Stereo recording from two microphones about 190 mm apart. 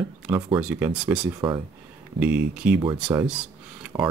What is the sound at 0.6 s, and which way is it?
Speech, 10° right (ahead or behind).